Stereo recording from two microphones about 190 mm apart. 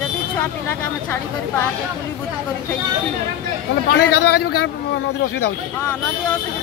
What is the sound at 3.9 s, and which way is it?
Speech, 55° left (ahead or behind).